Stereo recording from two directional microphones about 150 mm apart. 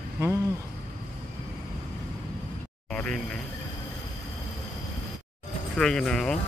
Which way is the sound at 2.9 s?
5° left (ahead or behind).